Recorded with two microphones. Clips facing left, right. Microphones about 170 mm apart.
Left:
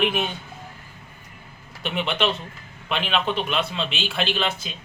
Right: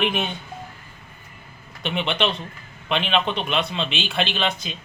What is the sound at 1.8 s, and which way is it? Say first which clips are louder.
Speech: right 1 dB; 5° left (ahead or behind).